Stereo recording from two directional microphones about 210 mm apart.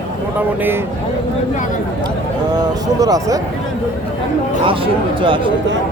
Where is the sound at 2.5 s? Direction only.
20° right (ahead or behind).